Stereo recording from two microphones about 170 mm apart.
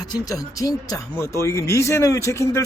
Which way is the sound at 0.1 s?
20° left (ahead or behind).